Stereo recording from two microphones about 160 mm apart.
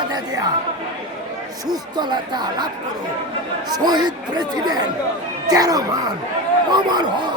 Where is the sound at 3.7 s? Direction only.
25° right (ahead or behind).